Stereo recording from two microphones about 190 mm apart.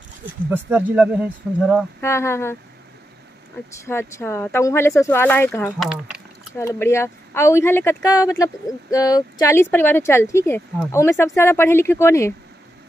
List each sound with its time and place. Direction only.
0.5 s speech: 10° right (ahead or behind)
2.0 s speech: 15° left (ahead or behind)
3.7 s speech: 15° left (ahead or behind)
5.8 s speech: 5° right (ahead or behind)
6.5 s speech: 15° left (ahead or behind)